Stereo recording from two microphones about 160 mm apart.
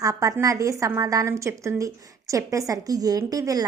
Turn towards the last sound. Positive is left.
turn(degrees=-20)  # may be behind; listen again after turning